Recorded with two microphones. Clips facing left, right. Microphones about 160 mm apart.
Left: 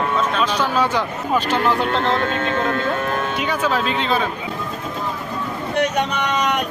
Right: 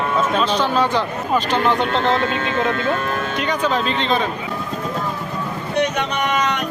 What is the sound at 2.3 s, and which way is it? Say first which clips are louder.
Speech: even; 45° left (ahead or behind).